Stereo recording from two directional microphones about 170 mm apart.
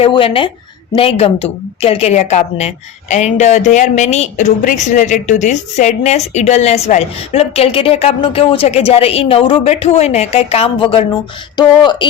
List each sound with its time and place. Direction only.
0.0 s a woman's voice: 30° left (ahead or behind)